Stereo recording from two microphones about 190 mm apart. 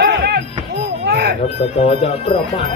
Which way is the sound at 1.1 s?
55° right (ahead or behind).